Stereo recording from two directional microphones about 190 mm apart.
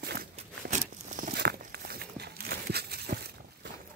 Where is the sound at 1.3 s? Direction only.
60° right (ahead or behind).